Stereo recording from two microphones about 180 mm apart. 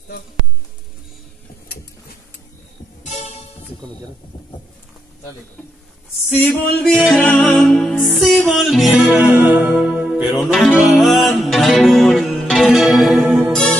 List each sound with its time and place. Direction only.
3.0 s music: 40° left (ahead or behind)
6.3 s music: 10° left (ahead or behind)